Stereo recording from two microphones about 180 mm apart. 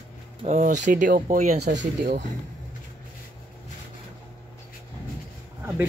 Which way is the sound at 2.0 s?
65° right (ahead or behind).